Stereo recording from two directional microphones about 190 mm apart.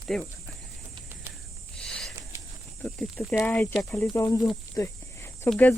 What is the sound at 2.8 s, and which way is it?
Speech, 5° left (ahead or behind).